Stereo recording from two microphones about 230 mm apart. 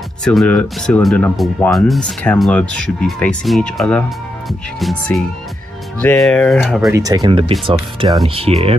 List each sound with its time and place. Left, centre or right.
0.2 s speech: centre
6.9 s speech: centre